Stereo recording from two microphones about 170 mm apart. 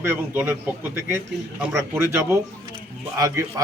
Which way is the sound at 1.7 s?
15° right (ahead or behind).